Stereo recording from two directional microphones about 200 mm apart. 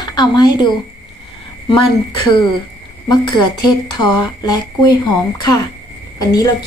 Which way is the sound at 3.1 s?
20° left (ahead or behind).